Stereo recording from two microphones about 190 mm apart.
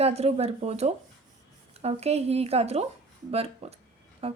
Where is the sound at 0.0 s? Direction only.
35° right (ahead or behind).